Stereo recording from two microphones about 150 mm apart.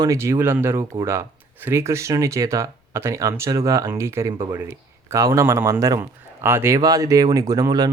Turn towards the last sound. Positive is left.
turn(degrees=-25)  # may be behind; listen again after turning